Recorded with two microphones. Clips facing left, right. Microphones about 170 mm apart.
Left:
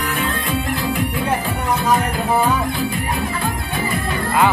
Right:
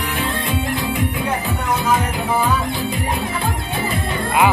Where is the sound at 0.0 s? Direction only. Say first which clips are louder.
Even; 20° right (ahead or behind).